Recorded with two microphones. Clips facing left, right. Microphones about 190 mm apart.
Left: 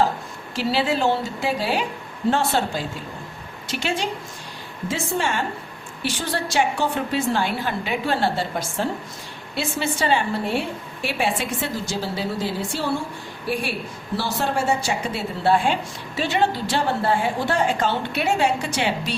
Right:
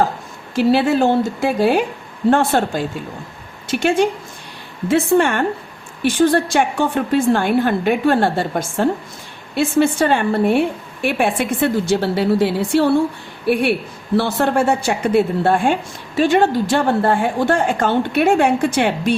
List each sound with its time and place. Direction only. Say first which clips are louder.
0.5 s a woman's voice: right 8 dB; 50° right (ahead or behind)